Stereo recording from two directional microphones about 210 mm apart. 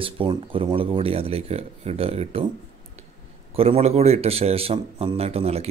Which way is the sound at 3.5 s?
25° right (ahead or behind).